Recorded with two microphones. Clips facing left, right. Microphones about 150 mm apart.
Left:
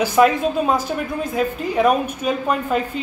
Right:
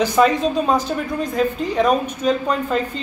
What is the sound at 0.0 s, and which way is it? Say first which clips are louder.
A woman's voice: even; 5° left (ahead or behind).